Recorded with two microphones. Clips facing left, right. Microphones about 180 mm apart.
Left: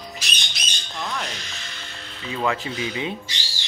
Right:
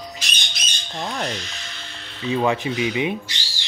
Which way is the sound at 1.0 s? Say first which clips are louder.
Right 3 dB; 35° right (ahead or behind).